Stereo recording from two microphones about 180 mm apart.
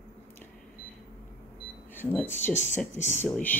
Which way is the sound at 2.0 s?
10° left (ahead or behind).